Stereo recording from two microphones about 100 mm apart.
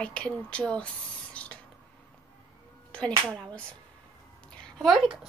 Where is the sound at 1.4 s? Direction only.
10° left (ahead or behind).